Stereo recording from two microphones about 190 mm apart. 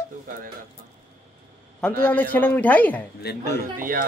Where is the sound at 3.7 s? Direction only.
45° right (ahead or behind).